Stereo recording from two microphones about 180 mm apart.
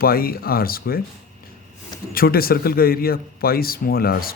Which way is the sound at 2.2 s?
55° left (ahead or behind).